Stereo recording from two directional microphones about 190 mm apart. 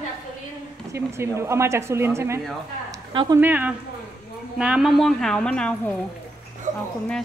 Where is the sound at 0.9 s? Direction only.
15° right (ahead or behind).